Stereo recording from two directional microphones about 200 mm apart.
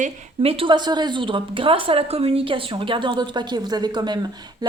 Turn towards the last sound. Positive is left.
turn(degrees=-20)  # may be behind; listen again after turning